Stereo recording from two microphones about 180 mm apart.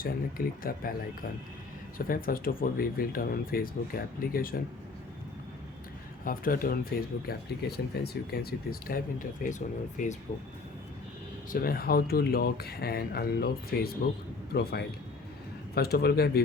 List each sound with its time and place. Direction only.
0.0 s speech: 55° left (ahead or behind)
2.0 s speech: 55° left (ahead or behind)
6.2 s speech: 50° left (ahead or behind)
11.5 s speech: 55° left (ahead or behind)